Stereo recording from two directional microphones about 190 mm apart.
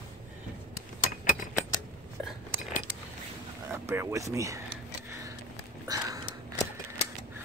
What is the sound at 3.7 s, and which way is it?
Speech, 15° right (ahead or behind).